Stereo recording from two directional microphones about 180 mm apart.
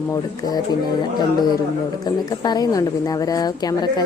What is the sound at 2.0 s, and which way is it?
Speech, 20° left (ahead or behind).